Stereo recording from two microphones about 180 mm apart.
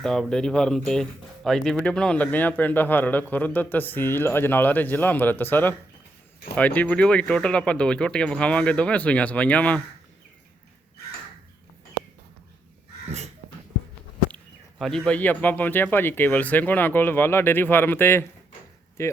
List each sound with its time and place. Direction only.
0.0 s speech: 5° left (ahead or behind)
13.1 s a sound: 40° right (ahead or behind)
14.3 s speech: 5° left (ahead or behind)